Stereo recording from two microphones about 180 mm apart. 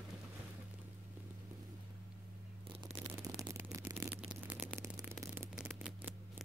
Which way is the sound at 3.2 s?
20° right (ahead or behind).